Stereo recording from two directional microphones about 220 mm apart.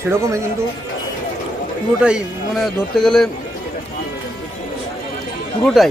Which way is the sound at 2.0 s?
Centre (ahead or behind).